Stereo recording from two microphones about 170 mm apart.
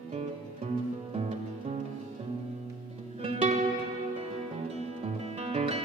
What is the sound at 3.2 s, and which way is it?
Music, 35° right (ahead or behind).